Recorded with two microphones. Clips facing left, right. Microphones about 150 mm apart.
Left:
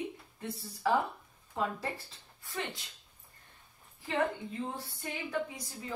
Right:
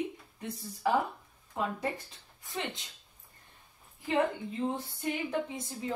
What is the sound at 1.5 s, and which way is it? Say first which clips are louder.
Speech: right 1 dB; 20° right (ahead or behind).